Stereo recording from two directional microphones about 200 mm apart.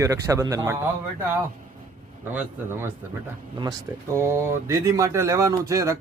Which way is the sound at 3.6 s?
15° right (ahead or behind).